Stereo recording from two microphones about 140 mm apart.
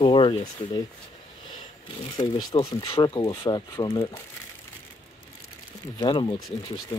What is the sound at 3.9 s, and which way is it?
Speech, 40° left (ahead or behind).